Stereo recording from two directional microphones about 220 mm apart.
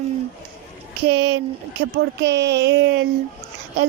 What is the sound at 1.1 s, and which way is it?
Speech, 90° right.